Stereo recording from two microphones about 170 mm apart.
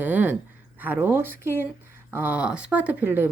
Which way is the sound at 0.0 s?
10° right (ahead or behind).